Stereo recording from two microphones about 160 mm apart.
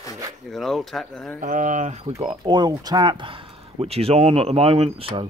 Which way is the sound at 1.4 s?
55° right (ahead or behind).